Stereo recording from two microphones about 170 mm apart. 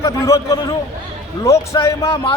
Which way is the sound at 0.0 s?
20° left (ahead or behind).